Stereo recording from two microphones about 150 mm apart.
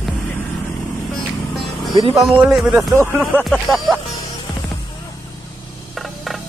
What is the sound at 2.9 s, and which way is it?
Music, 15° right (ahead or behind).